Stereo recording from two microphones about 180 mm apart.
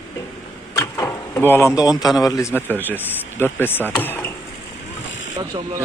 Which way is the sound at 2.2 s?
20° left (ahead or behind).